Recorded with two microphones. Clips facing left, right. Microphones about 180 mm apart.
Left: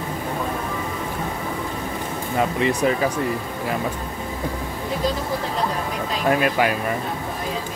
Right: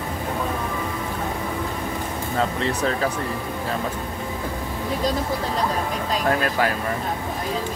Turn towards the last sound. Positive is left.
turn(degrees=15)  # may be behind; listen again after turning